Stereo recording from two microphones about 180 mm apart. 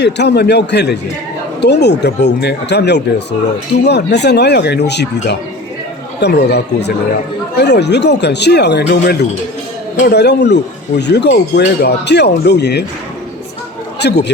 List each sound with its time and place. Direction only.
0.0 s speech: 70° left (ahead or behind)
14.0 s speech: 70° left (ahead or behind)